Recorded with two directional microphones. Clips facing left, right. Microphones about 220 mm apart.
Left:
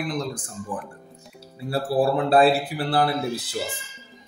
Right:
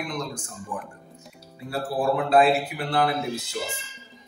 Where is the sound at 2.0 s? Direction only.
35° left (ahead or behind).